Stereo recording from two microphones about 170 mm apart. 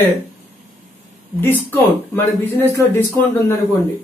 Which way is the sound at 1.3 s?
10° left (ahead or behind).